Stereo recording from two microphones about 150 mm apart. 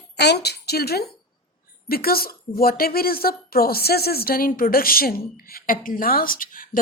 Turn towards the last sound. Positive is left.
turn(degrees=70)  # may be behind; listen again after turning